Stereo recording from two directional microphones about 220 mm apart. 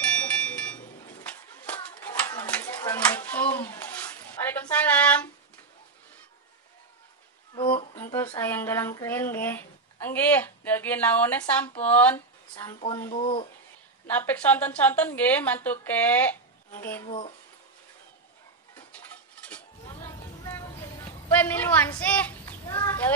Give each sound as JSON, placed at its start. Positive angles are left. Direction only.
{"t": 0.0, "sound": "a sound", "side_deg": 5}
{"t": 7.5, "sound": "music", "side_deg": 20}
{"t": 8.0, "sound": "a sound", "side_deg": 10}
{"t": 11.8, "sound": "a woman's voice", "side_deg": 5}
{"t": 12.5, "sound": "speech", "side_deg": 20}
{"t": 14.0, "sound": "a woman's voice", "side_deg": 10}
{"t": 17.0, "sound": "speech", "side_deg": 25}
{"t": 19.8, "sound": "a sound", "side_deg": 15}
{"t": 22.0, "sound": "goat", "side_deg": 5}